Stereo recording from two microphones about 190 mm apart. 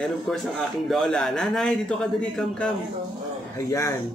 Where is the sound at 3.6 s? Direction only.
15° left (ahead or behind).